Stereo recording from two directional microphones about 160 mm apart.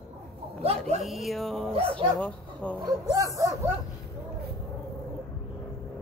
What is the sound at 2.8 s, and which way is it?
Speech, 20° right (ahead or behind).